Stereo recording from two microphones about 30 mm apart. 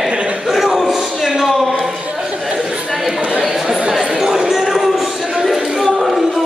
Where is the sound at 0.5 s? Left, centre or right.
Centre.